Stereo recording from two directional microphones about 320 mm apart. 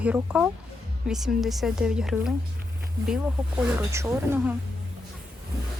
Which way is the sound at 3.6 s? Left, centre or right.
Centre.